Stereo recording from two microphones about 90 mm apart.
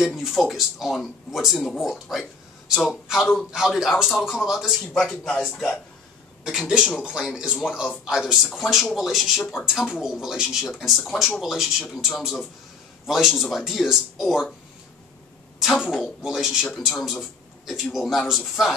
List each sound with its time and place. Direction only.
0.0 s speech: 5° right (ahead or behind)
6.4 s speech: 5° right (ahead or behind)
15.6 s speech: centre (ahead or behind)